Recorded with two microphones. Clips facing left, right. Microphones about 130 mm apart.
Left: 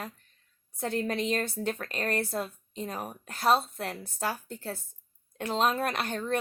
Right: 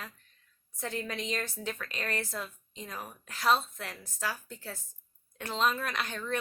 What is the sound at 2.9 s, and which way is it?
Speech, 40° left (ahead or behind).